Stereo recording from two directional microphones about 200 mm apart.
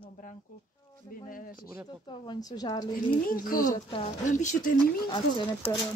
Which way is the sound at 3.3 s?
45° left (ahead or behind).